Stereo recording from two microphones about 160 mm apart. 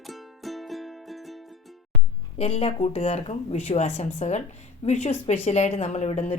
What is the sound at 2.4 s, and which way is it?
Speech, 40° left (ahead or behind).